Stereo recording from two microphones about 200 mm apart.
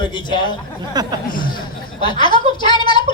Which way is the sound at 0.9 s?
20° right (ahead or behind).